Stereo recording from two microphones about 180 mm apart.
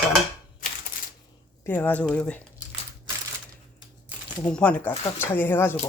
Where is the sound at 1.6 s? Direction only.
10° left (ahead or behind).